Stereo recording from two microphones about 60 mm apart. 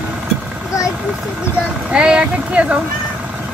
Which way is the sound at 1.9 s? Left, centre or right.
Centre.